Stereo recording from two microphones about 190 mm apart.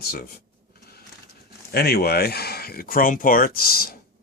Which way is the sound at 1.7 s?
55° left (ahead or behind).